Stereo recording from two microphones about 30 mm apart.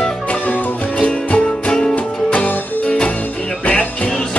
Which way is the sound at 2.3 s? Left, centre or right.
Left.